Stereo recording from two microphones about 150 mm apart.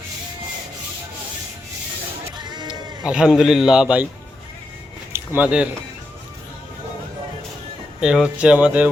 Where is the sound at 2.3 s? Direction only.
30° right (ahead or behind).